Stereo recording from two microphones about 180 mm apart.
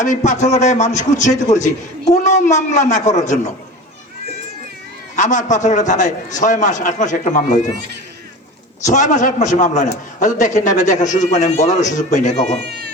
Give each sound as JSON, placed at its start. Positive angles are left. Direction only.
{"t": 0.0, "sound": "a man's voice", "side_deg": 45}
{"t": 5.1, "sound": "a man's voice", "side_deg": 45}
{"t": 8.8, "sound": "a man's voice", "side_deg": 45}